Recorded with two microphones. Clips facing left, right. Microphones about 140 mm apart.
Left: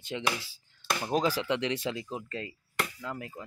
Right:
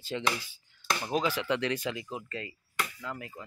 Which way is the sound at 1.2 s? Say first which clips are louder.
Left 3 dB; 35° left (ahead or behind).